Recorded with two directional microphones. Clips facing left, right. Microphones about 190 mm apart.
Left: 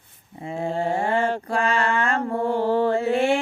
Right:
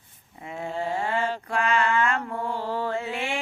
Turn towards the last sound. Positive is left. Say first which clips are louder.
# left 9 dB
turn(degrees=40)  # may be behind; listen again after turning